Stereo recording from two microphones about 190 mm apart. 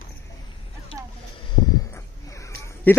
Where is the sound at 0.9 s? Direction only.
30° left (ahead or behind).